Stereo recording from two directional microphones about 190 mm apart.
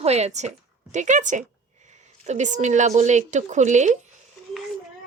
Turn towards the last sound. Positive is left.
turn(degrees=-40)  # may be behind; listen again after turning